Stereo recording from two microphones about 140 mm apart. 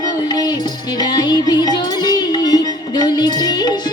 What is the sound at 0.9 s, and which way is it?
Music, 30° left (ahead or behind).